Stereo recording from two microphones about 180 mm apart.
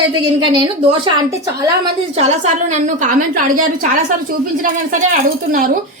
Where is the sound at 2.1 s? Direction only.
40° right (ahead or behind).